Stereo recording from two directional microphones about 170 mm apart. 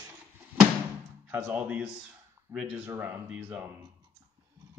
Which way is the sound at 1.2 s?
10° right (ahead or behind).